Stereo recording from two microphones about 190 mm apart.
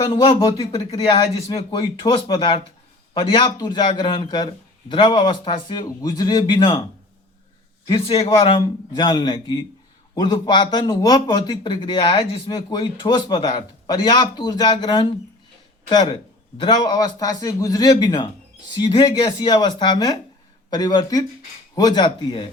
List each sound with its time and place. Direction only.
0.0 s speech: 25° left (ahead or behind)
8.0 s speech: 30° left (ahead or behind)
16.6 s speech: 25° left (ahead or behind)